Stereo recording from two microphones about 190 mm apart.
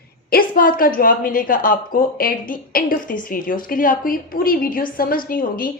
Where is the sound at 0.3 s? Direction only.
50° left (ahead or behind).